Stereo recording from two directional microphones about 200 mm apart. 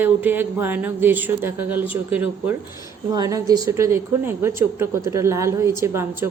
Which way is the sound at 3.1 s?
15° right (ahead or behind).